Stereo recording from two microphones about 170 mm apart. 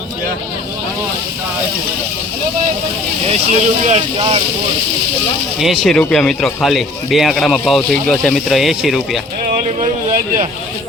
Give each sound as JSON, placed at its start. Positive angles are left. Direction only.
{"t": 3.2, "sound": "speech", "side_deg": -40}
{"t": 5.5, "sound": "speech", "side_deg": 0}
{"t": 9.4, "sound": "a sound", "side_deg": -55}